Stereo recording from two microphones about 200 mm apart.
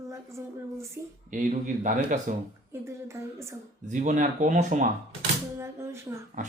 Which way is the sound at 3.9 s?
40° right (ahead or behind).